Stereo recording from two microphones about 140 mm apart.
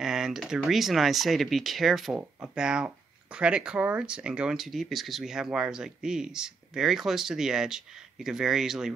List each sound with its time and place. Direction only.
0.0 s speech: 5° right (ahead or behind)